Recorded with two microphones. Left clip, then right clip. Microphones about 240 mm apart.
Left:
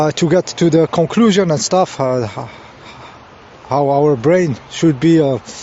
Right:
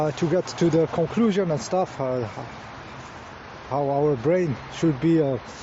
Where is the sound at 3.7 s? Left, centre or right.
Left.